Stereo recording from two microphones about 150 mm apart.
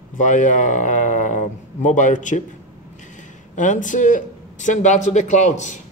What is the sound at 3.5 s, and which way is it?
Speech, 55° left (ahead or behind).